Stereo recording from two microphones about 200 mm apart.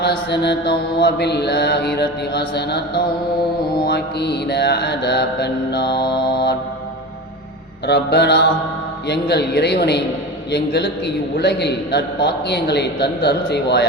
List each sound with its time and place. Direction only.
0.3 s a man's voice: 55° left (ahead or behind)
7.9 s a man's voice: 55° left (ahead or behind)